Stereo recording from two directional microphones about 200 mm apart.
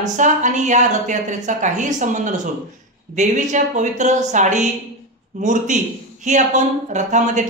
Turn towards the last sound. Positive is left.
turn(degrees=-35)  # may be behind; listen again after turning